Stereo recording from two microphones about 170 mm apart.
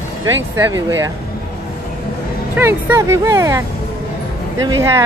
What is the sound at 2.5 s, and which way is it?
Speech, 15° right (ahead or behind).